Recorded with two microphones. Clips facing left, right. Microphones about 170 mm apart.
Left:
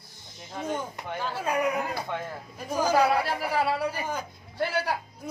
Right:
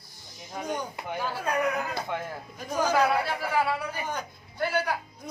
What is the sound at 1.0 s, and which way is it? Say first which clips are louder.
Speech: right 1 dB; 5° right (ahead or behind).